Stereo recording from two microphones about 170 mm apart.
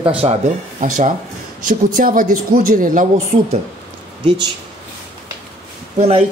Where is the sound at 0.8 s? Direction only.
45° right (ahead or behind).